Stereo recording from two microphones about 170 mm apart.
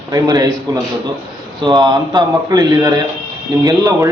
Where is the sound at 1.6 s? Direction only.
25° right (ahead or behind).